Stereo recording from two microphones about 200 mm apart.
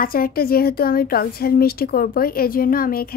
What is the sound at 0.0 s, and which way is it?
A woman's voice, 45° left (ahead or behind).